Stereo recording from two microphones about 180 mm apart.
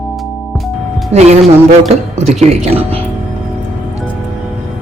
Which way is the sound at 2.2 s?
35° right (ahead or behind).